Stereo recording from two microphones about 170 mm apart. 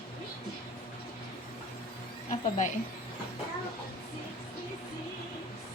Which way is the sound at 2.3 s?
45° left (ahead or behind).